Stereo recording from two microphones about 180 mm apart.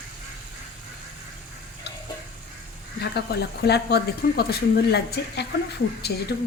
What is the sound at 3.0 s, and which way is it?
Speech, 65° left (ahead or behind).